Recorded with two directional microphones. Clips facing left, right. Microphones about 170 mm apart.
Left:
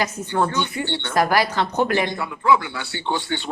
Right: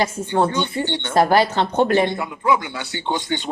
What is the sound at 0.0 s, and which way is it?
A woman's voice, 25° right (ahead or behind).